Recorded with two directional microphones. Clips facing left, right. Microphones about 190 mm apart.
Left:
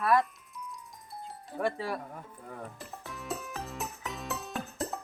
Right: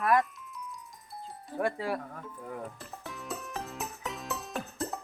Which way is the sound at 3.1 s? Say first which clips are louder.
Left 1 dB; centre (ahead or behind).